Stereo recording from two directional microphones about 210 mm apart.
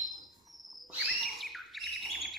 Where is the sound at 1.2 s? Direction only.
Centre (ahead or behind).